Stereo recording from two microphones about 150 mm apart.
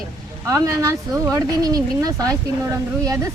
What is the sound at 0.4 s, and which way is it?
Speech, 20° right (ahead or behind).